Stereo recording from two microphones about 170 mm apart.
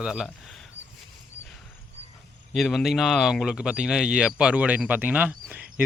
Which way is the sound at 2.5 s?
Centre (ahead or behind).